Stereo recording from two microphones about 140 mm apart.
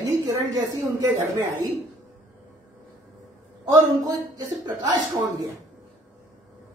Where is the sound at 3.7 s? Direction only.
30° right (ahead or behind).